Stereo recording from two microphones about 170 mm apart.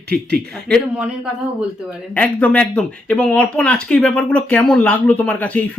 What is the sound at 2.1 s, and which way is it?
Speech, 10° left (ahead or behind).